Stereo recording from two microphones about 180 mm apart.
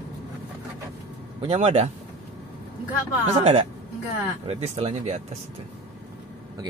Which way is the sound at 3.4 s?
35° right (ahead or behind).